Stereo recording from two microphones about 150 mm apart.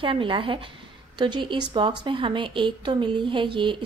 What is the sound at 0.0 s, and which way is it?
A woman's voice, 35° right (ahead or behind).